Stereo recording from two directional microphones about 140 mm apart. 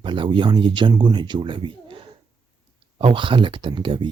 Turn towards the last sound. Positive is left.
turn(degrees=-35)  # may be behind; listen again after turning